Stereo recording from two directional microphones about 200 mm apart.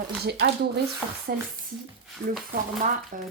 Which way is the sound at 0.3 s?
55° right (ahead or behind).